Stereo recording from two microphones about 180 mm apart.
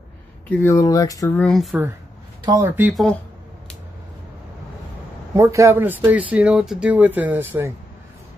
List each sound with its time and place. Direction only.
0.5 s speech: 15° left (ahead or behind)
1.4 s speech: centre (ahead or behind)
2.6 s speech: 10° right (ahead or behind)
2.9 s speech: centre (ahead or behind)
5.3 s speech: 15° right (ahead or behind)